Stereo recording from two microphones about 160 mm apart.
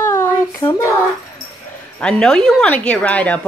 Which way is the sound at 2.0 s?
5° left (ahead or behind).